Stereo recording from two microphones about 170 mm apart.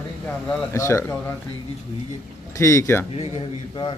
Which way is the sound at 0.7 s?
15° left (ahead or behind).